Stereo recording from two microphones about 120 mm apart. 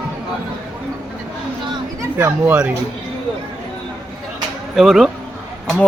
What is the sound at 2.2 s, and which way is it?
Speech, 20° right (ahead or behind).